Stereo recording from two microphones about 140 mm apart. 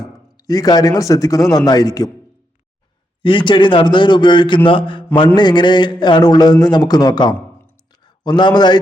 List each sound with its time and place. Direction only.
0.0 s speech: 25° left (ahead or behind)
3.2 s a man's voice: 35° left (ahead or behind)